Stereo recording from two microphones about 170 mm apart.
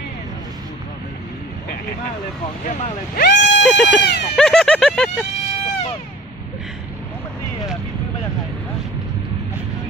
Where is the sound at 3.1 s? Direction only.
60° left (ahead or behind).